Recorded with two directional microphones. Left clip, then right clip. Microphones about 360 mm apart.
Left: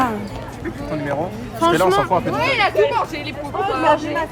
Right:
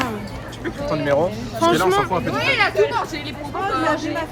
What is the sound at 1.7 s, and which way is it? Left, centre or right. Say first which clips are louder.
Speech: left 2 dB; centre.